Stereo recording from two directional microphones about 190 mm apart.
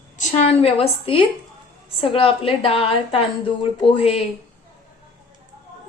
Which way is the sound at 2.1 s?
30° left (ahead or behind).